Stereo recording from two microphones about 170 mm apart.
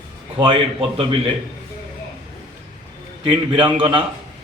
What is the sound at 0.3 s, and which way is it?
Speech, 30° right (ahead or behind).